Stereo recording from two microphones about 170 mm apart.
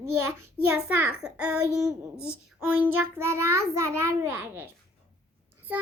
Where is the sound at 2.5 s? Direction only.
5° right (ahead or behind).